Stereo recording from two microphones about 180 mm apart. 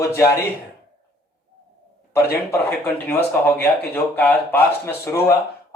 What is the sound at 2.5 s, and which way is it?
Speech, 10° left (ahead or behind).